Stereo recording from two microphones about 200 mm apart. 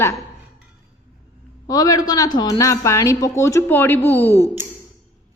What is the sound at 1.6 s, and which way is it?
A woman's voice, 20° left (ahead or behind).